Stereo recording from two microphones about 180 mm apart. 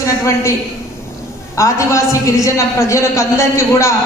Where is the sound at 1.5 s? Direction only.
15° left (ahead or behind).